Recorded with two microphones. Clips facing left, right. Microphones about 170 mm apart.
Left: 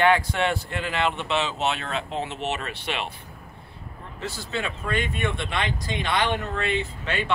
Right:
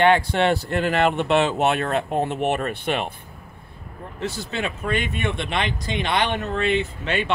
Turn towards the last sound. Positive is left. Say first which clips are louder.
# right 4 dB
turn(degrees=-20)  # may be behind; listen again after turning